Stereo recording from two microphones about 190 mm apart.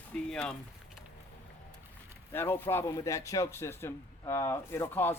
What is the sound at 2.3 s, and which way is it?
A man's voice, 10° left (ahead or behind).